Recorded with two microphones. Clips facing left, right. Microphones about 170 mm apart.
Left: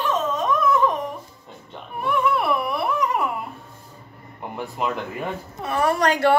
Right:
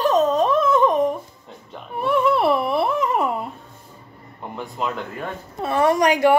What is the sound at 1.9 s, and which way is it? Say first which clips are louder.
Baby cry: right 3 dB; 30° right (ahead or behind).